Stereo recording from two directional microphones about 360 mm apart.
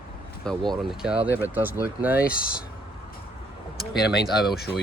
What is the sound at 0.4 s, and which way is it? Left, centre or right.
Speech, centre.